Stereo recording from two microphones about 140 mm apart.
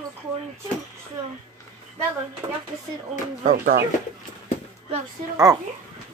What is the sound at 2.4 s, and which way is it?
Speech, 20° right (ahead or behind).